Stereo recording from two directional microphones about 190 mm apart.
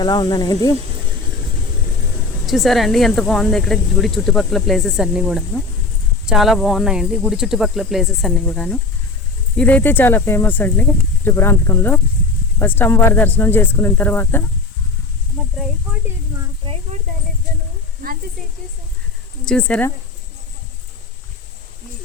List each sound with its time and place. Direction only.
0.0 s speech: 20° left (ahead or behind)
2.5 s speech: centre (ahead or behind)
18.0 s sizzle: 50° right (ahead or behind)
19.5 s speech: 5° left (ahead or behind)